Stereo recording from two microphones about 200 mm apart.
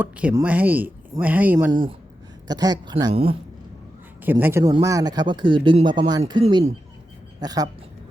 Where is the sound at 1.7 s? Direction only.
25° right (ahead or behind).